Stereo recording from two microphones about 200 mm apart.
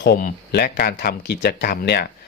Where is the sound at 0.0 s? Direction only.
50° left (ahead or behind).